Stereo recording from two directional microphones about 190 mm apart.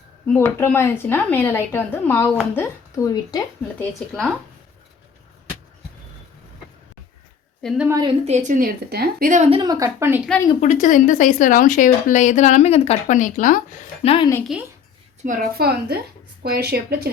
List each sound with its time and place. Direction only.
0.3 s speech: 10° left (ahead or behind)
3.8 s speech: centre (ahead or behind)
7.6 s a woman's voice: centre (ahead or behind)
7.9 s a woman's voice: 20° right (ahead or behind)
8.2 s a woman's voice: 35° right (ahead or behind)
9.5 s speech: 20° right (ahead or behind)
10.6 s speech: 40° left (ahead or behind)
14.0 s speech: 30° left (ahead or behind)
14.5 s speech: 5° right (ahead or behind)
15.2 s a woman's voice: 45° right (ahead or behind)